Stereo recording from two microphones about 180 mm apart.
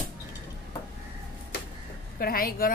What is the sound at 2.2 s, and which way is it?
Speech, 55° left (ahead or behind).